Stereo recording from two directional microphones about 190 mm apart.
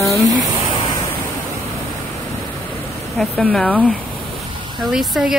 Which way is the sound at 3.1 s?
5° left (ahead or behind).